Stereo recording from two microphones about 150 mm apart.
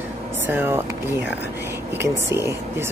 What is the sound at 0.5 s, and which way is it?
Speech, 15° right (ahead or behind).